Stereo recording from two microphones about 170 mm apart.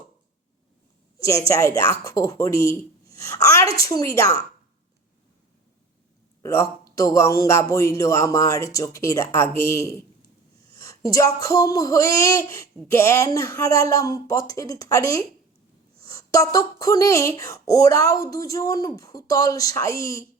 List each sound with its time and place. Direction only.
1.2 s speech: 20° left (ahead or behind)
6.4 s speech: 15° left (ahead or behind)